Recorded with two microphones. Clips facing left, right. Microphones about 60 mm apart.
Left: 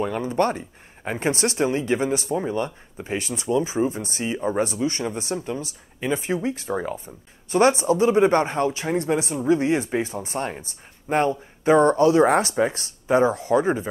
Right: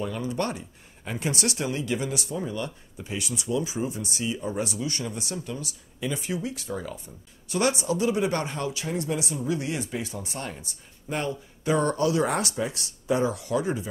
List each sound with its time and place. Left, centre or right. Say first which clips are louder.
0.0 s speech: left 7 dB; left